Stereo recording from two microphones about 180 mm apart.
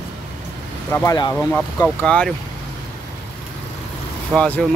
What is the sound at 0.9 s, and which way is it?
Speech, 20° left (ahead or behind).